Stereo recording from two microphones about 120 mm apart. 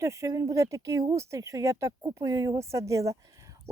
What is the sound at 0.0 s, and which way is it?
Speech, 25° right (ahead or behind).